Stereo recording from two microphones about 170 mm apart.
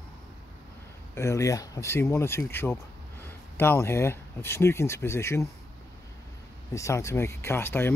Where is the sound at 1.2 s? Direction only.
15° left (ahead or behind).